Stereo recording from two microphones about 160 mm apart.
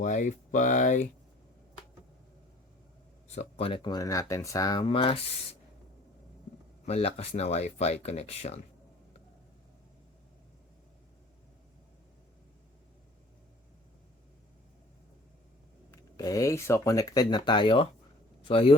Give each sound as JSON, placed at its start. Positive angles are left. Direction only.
{"t": 0.0, "sound": "speech", "side_deg": 50}
{"t": 3.2, "sound": "speech", "side_deg": 40}
{"t": 6.8, "sound": "speech", "side_deg": 40}
{"t": 15.9, "sound": "speech", "side_deg": 20}